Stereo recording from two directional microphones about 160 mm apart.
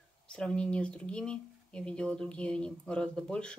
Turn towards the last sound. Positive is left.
turn(degrees=5)  # may be behind; listen again after turning